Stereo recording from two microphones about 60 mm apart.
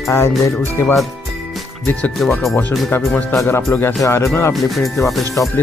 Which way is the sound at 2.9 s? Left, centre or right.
Left.